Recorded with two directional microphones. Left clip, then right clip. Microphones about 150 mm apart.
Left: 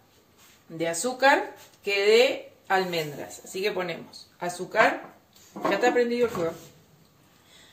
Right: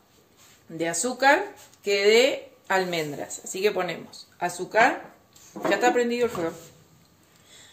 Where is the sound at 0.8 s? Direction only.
50° right (ahead or behind); by 3.0 s 70° right (ahead or behind).